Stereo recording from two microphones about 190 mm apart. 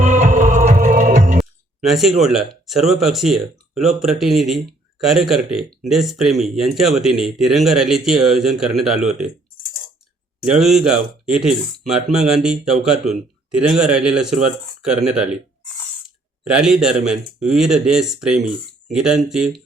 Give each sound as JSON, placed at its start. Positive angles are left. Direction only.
{"t": 0.0, "sound": "music", "side_deg": -40}
{"t": 1.9, "sound": "speech", "side_deg": 0}
{"t": 10.6, "sound": "speech", "side_deg": 0}
{"t": 16.0, "sound": "a sound", "side_deg": -5}
{"t": 17.0, "sound": "speech", "side_deg": -5}